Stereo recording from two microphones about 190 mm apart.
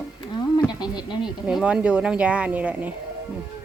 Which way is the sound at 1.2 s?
5° right (ahead or behind).